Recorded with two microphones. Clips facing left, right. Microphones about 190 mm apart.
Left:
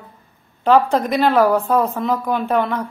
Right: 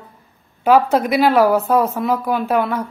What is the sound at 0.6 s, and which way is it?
A woman's voice, 10° right (ahead or behind).